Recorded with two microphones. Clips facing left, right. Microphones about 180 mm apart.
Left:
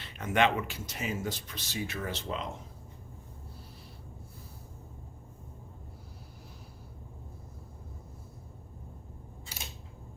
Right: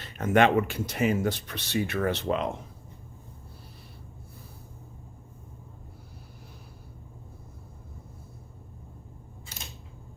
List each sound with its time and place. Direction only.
0.0 s speech: 45° right (ahead or behind); by 2.5 s 65° right (ahead or behind)